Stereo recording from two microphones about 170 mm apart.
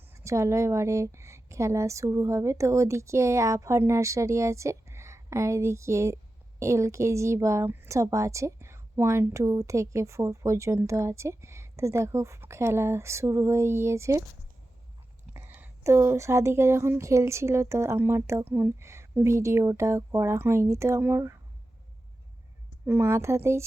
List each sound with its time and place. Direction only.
0.1 s a woman's voice: 15° right (ahead or behind)
15.3 s a woman's voice: 10° right (ahead or behind)
22.9 s a woman's voice: 15° right (ahead or behind)